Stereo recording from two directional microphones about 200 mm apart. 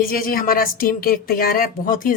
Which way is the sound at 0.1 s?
45° left (ahead or behind).